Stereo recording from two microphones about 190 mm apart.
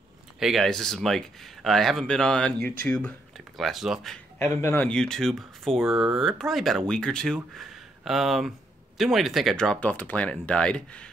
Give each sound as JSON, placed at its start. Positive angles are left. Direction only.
{"t": 0.4, "sound": "speech", "side_deg": 0}
{"t": 2.6, "sound": "speech", "side_deg": -45}
{"t": 2.9, "sound": "speech", "side_deg": 5}
{"t": 4.4, "sound": "speech", "side_deg": 15}